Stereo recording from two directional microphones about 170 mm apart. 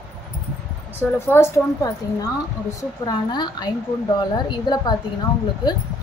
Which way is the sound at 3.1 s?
25° left (ahead or behind).